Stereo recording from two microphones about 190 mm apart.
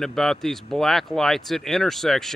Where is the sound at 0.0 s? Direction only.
Centre (ahead or behind).